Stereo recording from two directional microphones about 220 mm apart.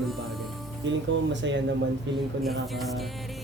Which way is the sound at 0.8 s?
55° right (ahead or behind).